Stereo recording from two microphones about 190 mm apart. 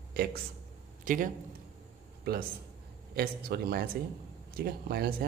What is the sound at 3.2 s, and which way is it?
A man's voice, 55° right (ahead or behind).